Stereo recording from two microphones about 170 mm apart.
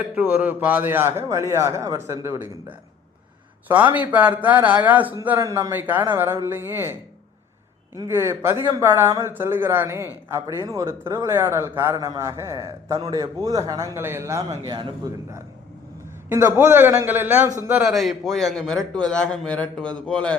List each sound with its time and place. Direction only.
0.2 s a man's voice: 10° right (ahead or behind)
3.9 s a man's voice: 10° right (ahead or behind)
7.9 s a man's voice: 15° right (ahead or behind)
16.3 s a man's voice: 15° right (ahead or behind); by 20.3 s 5° left (ahead or behind)